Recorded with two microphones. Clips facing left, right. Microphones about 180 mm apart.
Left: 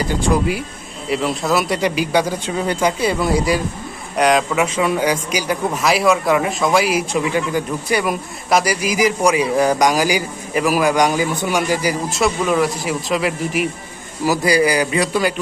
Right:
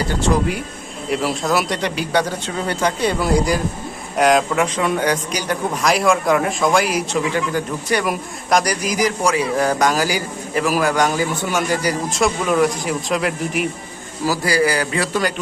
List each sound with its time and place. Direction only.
0.1 s a man's voice: 10° left (ahead or behind)
1.1 s a man's voice: centre (ahead or behind)
14.3 s a man's voice: 15° left (ahead or behind)